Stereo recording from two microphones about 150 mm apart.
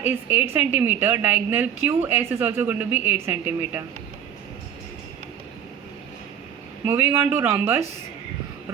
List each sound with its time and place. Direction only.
0.0 s a woman's voice: 15° right (ahead or behind)
6.8 s a woman's voice: 15° right (ahead or behind)